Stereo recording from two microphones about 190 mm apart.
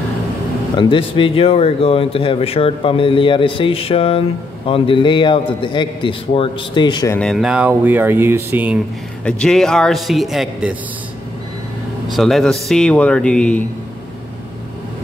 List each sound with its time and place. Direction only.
0.7 s speech: 25° left (ahead or behind)
7.2 s speech: centre (ahead or behind)
9.2 s a man's voice: 5° left (ahead or behind)
12.1 s a man's voice: centre (ahead or behind)